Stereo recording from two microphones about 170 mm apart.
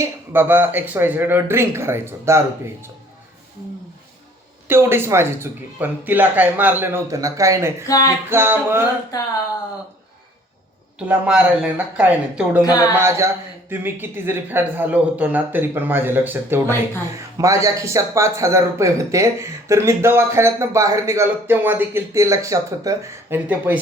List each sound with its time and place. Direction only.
0.0 s speech: 10° right (ahead or behind)
4.7 s speech: 15° right (ahead or behind)
7.9 s a sound: 20° left (ahead or behind)
8.3 s speech: 15° right (ahead or behind)
11.0 s speech: 5° right (ahead or behind)